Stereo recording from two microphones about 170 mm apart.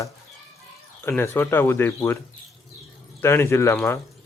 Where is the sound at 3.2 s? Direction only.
15° left (ahead or behind).